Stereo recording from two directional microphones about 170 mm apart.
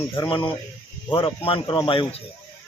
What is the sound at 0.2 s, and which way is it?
A man's voice, 25° left (ahead or behind).